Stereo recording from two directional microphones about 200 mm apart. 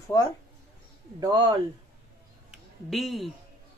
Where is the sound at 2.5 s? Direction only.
Centre (ahead or behind).